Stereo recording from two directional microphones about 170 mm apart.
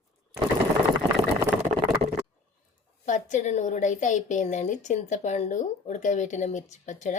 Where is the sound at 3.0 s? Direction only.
45° left (ahead or behind).